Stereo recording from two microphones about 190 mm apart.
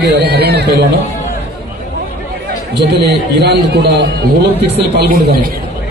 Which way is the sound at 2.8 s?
60° right (ahead or behind).